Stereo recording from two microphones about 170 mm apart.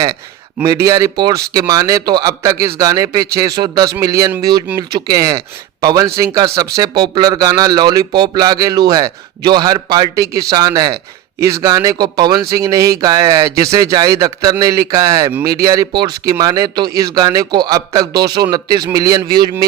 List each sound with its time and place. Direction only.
0.6 s speech: 20° right (ahead or behind)